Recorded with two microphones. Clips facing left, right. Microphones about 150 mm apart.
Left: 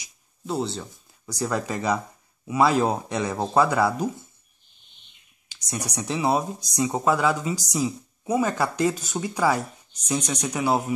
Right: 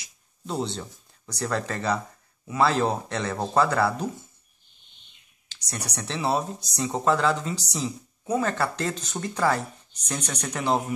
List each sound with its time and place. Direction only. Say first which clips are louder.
0.5 s speech: left 2 dB; 5° left (ahead or behind)
5.5 s speech: left 4 dB; 10° left (ahead or behind)